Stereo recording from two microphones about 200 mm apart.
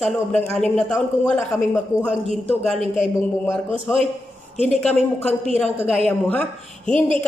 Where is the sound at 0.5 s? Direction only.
5° left (ahead or behind).